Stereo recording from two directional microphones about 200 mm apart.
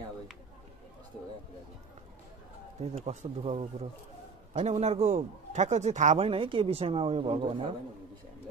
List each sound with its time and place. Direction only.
2.8 s a man's voice: 30° right (ahead or behind)